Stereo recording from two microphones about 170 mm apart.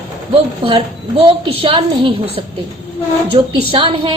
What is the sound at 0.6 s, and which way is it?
A woman's voice, 30° right (ahead or behind).